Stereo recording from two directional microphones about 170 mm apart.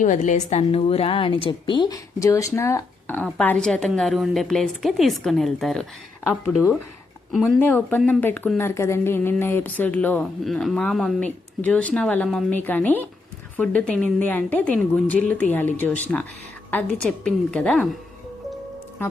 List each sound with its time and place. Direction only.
0.0 s a woman's voice: 45° left (ahead or behind); by 6.7 s centre (ahead or behind)
7.6 s a woman's voice: 10° left (ahead or behind)